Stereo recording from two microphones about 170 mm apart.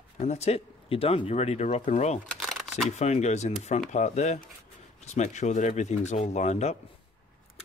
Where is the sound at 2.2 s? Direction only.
Centre (ahead or behind).